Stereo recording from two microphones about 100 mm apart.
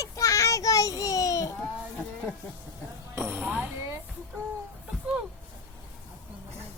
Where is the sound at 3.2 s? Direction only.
25° right (ahead or behind).